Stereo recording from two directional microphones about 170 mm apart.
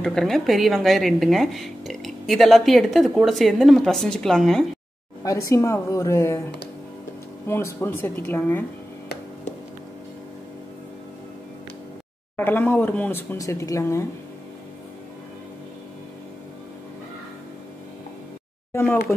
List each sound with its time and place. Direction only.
0.0 s speech: 5° left (ahead or behind)
5.2 s speech: 20° left (ahead or behind)
7.4 s speech: 15° left (ahead or behind)
12.4 s speech: 10° left (ahead or behind)
18.7 s speech: 15° left (ahead or behind)